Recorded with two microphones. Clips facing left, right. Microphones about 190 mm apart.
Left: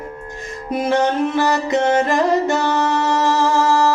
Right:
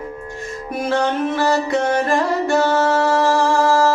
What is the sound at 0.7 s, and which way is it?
Music, 20° left (ahead or behind).